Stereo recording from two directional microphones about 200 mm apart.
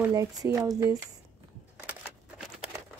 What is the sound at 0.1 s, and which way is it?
Speech, 20° right (ahead or behind).